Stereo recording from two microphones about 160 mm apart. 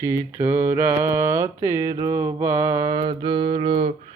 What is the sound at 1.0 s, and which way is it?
Mantra, 15° right (ahead or behind).